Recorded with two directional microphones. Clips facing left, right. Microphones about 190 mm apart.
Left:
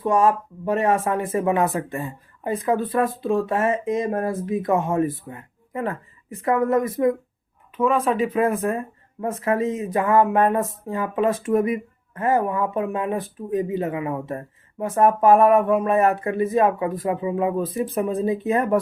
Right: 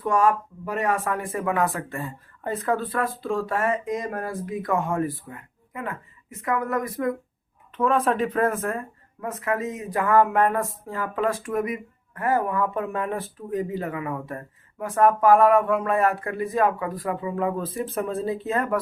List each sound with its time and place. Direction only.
0.0 s speech: 25° left (ahead or behind)
7.8 s speech: centre (ahead or behind)
9.2 s speech: 30° left (ahead or behind)